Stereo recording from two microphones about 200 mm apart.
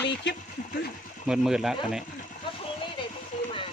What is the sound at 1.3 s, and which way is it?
Speech, 5° right (ahead or behind).